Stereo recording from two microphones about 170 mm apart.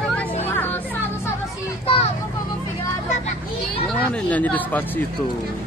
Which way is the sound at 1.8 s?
35° left (ahead or behind).